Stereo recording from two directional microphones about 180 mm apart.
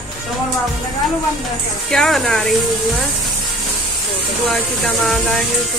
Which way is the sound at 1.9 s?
Centre (ahead or behind).